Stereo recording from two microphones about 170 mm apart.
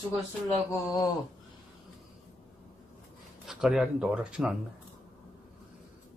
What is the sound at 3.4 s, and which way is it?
Speech, 5° right (ahead or behind).